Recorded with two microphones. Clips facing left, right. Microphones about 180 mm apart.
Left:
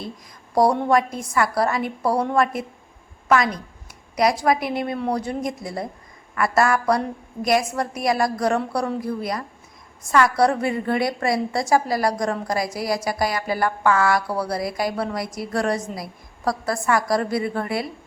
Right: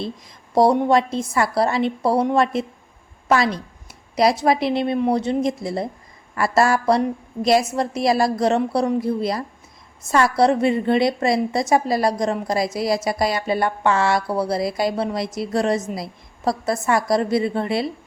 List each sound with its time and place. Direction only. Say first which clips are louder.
0.5 s a woman's voice: right 2 dB; 25° right (ahead or behind)